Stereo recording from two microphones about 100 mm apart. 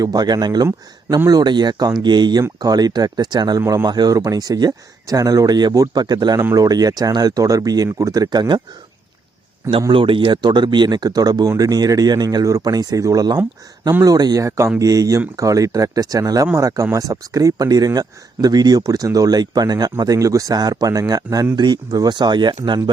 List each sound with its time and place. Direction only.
0.0 s speech: 40° right (ahead or behind)
9.9 s speech: 60° right (ahead or behind)